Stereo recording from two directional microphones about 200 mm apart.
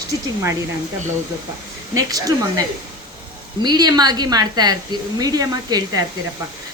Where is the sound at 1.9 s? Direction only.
15° right (ahead or behind).